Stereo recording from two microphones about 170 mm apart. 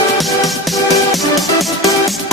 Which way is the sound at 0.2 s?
Centre (ahead or behind).